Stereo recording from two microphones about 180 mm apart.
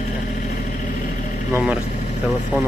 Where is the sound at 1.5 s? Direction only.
5° right (ahead or behind).